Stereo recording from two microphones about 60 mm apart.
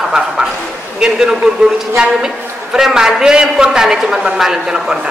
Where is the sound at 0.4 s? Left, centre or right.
Centre.